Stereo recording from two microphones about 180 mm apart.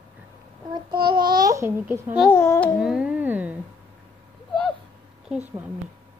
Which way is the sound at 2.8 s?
5° right (ahead or behind).